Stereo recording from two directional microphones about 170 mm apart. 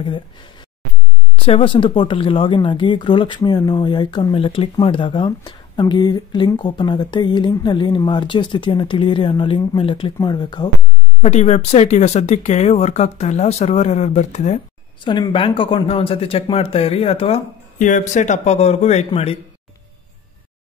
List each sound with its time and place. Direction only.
0.0 s speech: 30° left (ahead or behind)
11.2 s speech: 40° left (ahead or behind)
15.0 s speech: 30° left (ahead or behind)
17.7 s speech: 45° left (ahead or behind)